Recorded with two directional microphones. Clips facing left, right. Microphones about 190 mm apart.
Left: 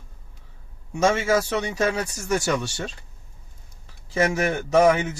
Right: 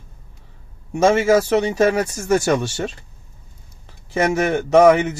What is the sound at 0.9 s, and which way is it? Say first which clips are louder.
A man's voice: right 6 dB; 60° right (ahead or behind).